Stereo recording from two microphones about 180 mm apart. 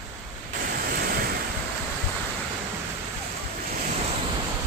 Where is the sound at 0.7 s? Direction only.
55° right (ahead or behind).